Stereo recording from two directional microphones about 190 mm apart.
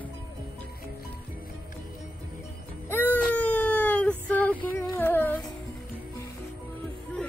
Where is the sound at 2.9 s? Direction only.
10° left (ahead or behind).